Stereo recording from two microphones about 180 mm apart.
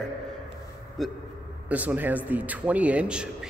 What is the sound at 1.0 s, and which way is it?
A man's voice, centre (ahead or behind).